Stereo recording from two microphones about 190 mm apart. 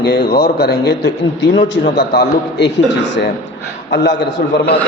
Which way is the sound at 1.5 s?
70° left (ahead or behind).